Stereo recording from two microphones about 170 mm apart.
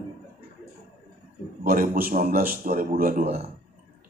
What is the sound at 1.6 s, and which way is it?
A man's voice, 55° right (ahead or behind).